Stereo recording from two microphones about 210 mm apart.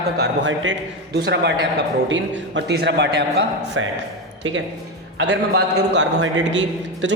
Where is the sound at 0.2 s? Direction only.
60° right (ahead or behind).